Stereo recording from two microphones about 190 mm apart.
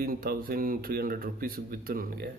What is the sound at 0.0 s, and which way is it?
Speech, 50° right (ahead or behind).